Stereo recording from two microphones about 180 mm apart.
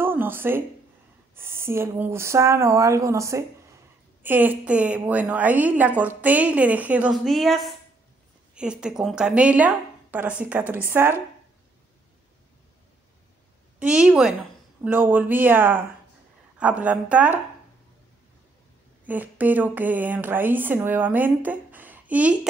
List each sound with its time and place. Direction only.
0.0 s a woman's voice: 10° right (ahead or behind)
13.7 s a woman's voice: 5° right (ahead or behind)
19.0 s a woman's voice: 10° right (ahead or behind)